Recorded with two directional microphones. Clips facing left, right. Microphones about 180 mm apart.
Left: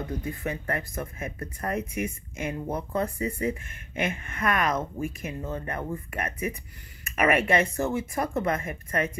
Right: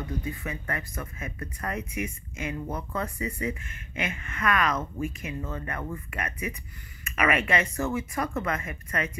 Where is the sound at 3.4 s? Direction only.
50° left (ahead or behind).